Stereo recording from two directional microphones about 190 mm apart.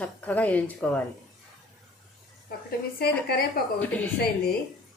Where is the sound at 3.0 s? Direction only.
55° left (ahead or behind).